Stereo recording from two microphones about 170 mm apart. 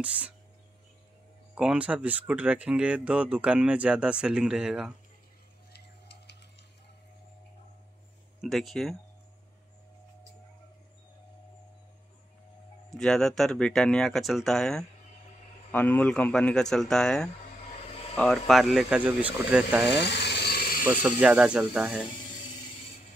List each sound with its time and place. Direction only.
0.0 s speech: 10° right (ahead or behind)
1.5 s speech: 5° right (ahead or behind)
5.7 s a sound: 80° left
8.4 s speech: centre (ahead or behind)
12.9 s speech: 5° left (ahead or behind)
20.0 s electric toothbrush: 90° left; by 20.8 s 65° left (ahead or behind)
21.0 s speech: 10° right (ahead or behind)